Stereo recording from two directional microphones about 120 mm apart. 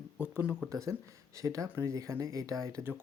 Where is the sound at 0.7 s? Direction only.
25° right (ahead or behind).